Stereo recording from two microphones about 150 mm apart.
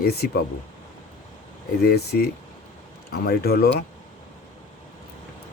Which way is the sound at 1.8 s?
90° left.